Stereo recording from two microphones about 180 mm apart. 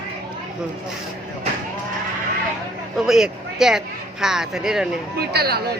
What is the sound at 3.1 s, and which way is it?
Speech, 5° right (ahead or behind).